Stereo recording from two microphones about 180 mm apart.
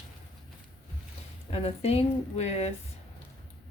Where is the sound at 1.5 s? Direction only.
35° left (ahead or behind).